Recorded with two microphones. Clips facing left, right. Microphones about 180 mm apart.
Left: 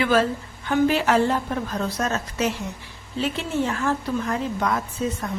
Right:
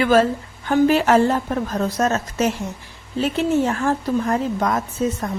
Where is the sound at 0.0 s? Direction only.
45° right (ahead or behind).